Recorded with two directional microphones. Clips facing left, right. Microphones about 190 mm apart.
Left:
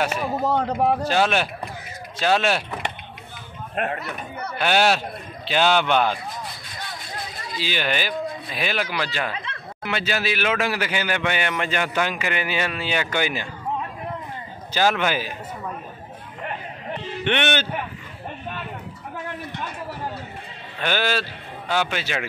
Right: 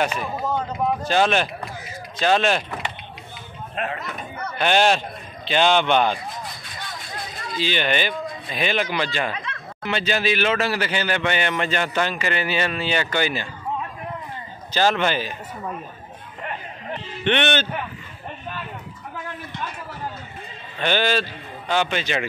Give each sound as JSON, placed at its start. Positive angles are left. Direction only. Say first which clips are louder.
{"t": 0.5, "sound": "speech", "louder": "left 3 dB", "side_deg": 70}
{"t": 1.0, "sound": "a man's voice", "louder": "right 1 dB", "side_deg": 10}
{"t": 3.7, "sound": "speech", "louder": "left 2 dB", "side_deg": 55}
{"t": 4.6, "sound": "a man's voice", "louder": "right 1 dB", "side_deg": 5}
{"t": 7.5, "sound": "a man's voice", "louder": "right 3 dB", "side_deg": 5}
{"t": 14.7, "sound": "a man's voice", "louder": "right 1 dB", "side_deg": 10}
{"t": 17.2, "sound": "a man's voice", "louder": "right 2 dB", "side_deg": 10}
{"t": 20.8, "sound": "a man's voice", "louder": "right 2 dB", "side_deg": 5}